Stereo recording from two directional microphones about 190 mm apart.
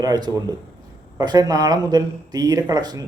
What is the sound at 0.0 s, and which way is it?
A man's voice, 20° right (ahead or behind).